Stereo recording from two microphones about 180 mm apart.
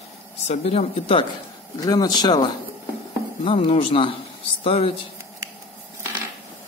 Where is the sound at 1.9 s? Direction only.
20° left (ahead or behind).